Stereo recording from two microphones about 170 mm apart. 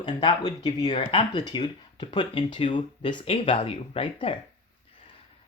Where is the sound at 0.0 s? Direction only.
25° left (ahead or behind).